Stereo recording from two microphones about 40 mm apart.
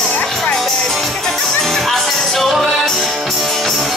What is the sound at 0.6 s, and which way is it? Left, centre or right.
Music, centre.